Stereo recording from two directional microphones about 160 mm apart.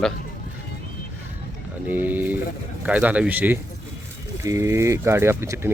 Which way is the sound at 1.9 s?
10° right (ahead or behind).